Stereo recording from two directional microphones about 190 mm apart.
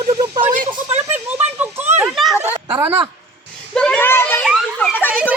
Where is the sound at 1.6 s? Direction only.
10° right (ahead or behind).